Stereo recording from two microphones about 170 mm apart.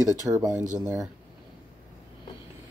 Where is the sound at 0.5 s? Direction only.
45° right (ahead or behind).